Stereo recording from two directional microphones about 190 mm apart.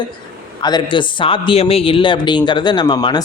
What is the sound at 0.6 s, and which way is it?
Speech, 25° left (ahead or behind).